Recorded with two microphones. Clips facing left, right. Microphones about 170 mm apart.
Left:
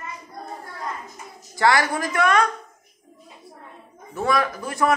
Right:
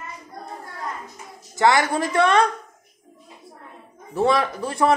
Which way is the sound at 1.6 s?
20° right (ahead or behind).